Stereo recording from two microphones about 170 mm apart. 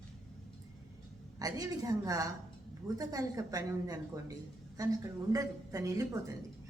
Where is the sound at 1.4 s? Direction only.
20° right (ahead or behind).